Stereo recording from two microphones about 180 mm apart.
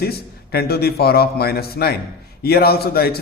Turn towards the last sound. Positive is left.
turn(degrees=60)  # may be behind; listen again after turning